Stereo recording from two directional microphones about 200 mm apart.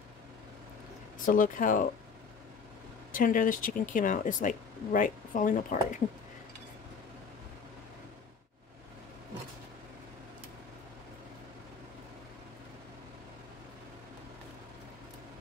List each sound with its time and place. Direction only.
1.2 s speech: 40° left (ahead or behind)
3.1 s speech: 40° left (ahead or behind)